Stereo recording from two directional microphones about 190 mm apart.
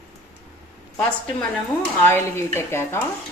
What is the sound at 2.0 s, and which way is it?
Speech, 10° left (ahead or behind).